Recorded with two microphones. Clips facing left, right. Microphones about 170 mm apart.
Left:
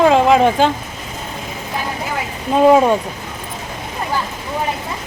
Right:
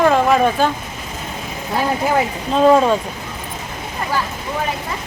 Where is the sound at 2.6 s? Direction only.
10° left (ahead or behind).